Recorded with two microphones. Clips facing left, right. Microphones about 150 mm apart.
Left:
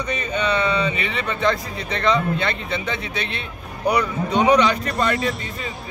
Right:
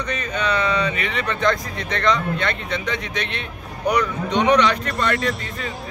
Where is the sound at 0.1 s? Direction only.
5° left (ahead or behind).